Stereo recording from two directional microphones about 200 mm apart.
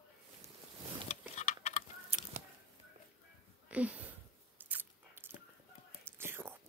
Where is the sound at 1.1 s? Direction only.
30° left (ahead or behind).